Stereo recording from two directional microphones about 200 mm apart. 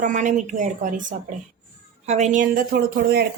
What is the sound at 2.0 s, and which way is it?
A woman's voice, 35° right (ahead or behind).